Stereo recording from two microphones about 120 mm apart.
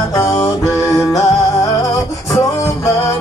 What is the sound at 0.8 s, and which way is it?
Music, 30° left (ahead or behind).